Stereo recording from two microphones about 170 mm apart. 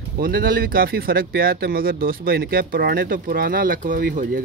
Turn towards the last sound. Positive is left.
turn(degrees=-55)  # may be behind; listen again after turning